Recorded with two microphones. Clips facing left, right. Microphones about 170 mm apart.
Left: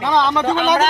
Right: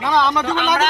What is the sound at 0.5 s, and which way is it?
Speech, 40° left (ahead or behind).